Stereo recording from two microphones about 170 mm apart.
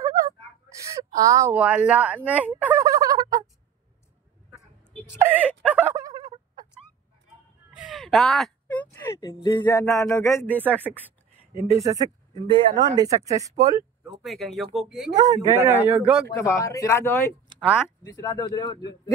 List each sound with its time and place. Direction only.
0.0 s whimper: 20° right (ahead or behind)
0.7 s speech: 20° right (ahead or behind)
1.6 s speech: 5° right (ahead or behind)
5.1 s a man's voice: 10° right (ahead or behind)
5.9 s a sound: 20° right (ahead or behind)
7.7 s a sound: centre (ahead or behind); by 9.3 s 15° left (ahead or behind)
9.3 s speech: 30° left (ahead or behind); by 10.6 s 15° left (ahead or behind)
10.6 s a man's voice: 10° right (ahead or behind)
11.8 s speech: 20° right (ahead or behind)
14.2 s speech: centre (ahead or behind)
15.1 s a man's voice: 25° right (ahead or behind); by 16.3 s 5° right (ahead or behind)
16.3 s speech: 15° left (ahead or behind)